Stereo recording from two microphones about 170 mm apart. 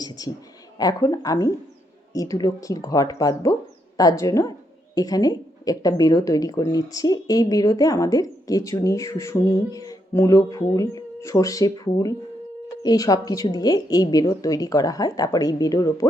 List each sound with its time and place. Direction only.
0.2 s a woman's voice: 20° left (ahead or behind)